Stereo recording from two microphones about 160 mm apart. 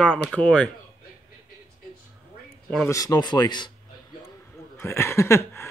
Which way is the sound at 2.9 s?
20° left (ahead or behind).